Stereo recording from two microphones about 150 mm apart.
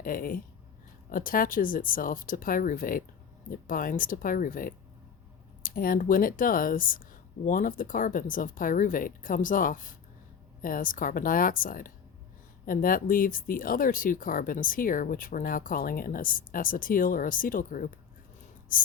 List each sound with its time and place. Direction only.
0.0 s speech: 70° left (ahead or behind)